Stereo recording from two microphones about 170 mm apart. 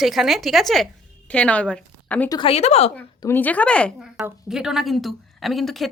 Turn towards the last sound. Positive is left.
turn(degrees=0)  # may be behind; listen again after turning